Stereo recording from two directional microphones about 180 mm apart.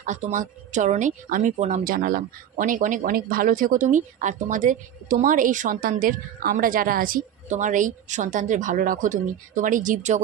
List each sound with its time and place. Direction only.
0.0 s a woman's voice: 40° right (ahead or behind)